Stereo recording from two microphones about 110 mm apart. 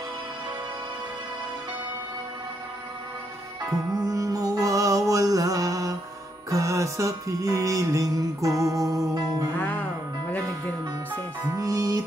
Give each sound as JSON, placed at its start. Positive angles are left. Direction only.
{"t": 3.9, "sound": "music", "side_deg": -30}
{"t": 11.5, "sound": "music", "side_deg": -30}